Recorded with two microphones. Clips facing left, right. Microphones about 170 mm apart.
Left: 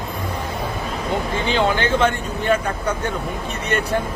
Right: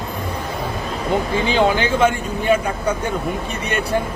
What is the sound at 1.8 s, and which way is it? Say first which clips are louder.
Speech: right 2 dB; 10° right (ahead or behind).